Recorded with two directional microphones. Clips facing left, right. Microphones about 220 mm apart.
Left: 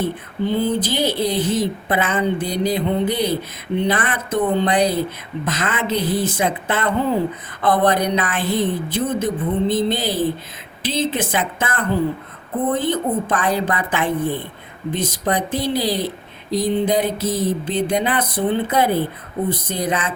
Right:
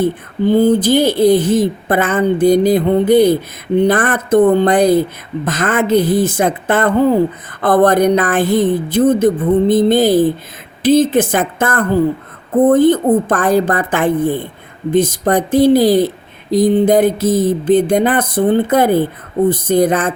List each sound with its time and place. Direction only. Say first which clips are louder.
0.4 s speech: right 9 dB; 45° right (ahead or behind)